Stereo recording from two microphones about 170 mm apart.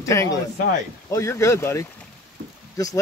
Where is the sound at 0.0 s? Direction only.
20° left (ahead or behind).